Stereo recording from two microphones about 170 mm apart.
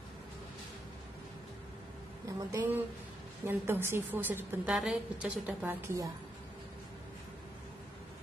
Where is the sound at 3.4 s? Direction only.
15° right (ahead or behind).